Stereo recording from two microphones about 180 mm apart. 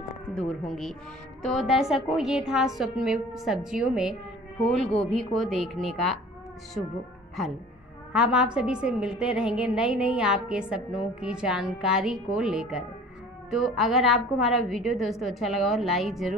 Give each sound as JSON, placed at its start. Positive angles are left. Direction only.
{"t": 1.4, "sound": "a woman's voice", "side_deg": 0}
{"t": 8.1, "sound": "a woman's voice", "side_deg": -5}